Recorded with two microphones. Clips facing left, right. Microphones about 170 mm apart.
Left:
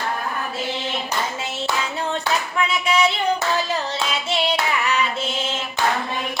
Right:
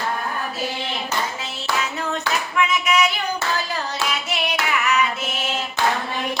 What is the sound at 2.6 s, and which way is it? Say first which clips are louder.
Clapping: right 1 dB; 30° left (ahead or behind).